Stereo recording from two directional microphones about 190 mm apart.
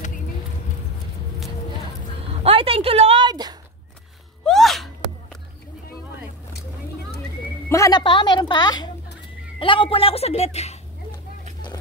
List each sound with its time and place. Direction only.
2.4 s a sound: 30° right (ahead or behind)
4.5 s gasp: centre (ahead or behind)
7.7 s a woman's voice: 20° left (ahead or behind)